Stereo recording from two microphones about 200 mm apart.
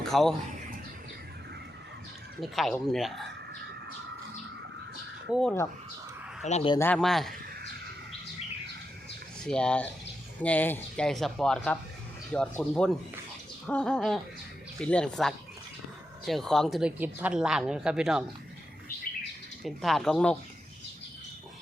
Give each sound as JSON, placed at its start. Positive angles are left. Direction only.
{"t": 0.0, "sound": "speech", "side_deg": 0}
{"t": 2.4, "sound": "a woman's voice", "side_deg": 0}
{"t": 5.3, "sound": "a woman's voice", "side_deg": 5}
{"t": 6.4, "sound": "speech", "side_deg": 30}
{"t": 6.7, "sound": "a woman's voice", "side_deg": 5}
{"t": 9.4, "sound": "a woman's voice", "side_deg": 5}
{"t": 19.6, "sound": "a woman's voice", "side_deg": 0}